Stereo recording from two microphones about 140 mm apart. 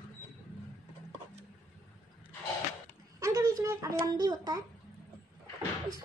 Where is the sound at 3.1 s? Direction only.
25° right (ahead or behind).